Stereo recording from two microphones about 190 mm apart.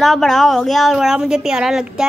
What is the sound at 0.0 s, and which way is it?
Speech, centre (ahead or behind).